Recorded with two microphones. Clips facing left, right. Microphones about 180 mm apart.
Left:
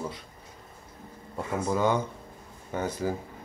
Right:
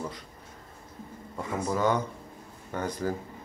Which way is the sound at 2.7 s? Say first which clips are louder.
Left 1 dB; 5° left (ahead or behind).